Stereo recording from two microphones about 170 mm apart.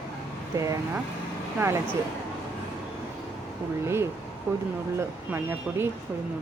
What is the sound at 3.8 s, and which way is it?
Speech, 15° right (ahead or behind).